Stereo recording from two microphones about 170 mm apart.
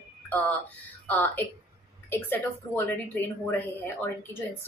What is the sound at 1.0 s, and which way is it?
A woman's voice, 10° left (ahead or behind).